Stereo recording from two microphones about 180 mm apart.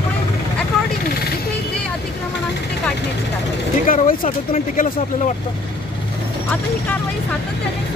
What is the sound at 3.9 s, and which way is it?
Speech, 50° left (ahead or behind).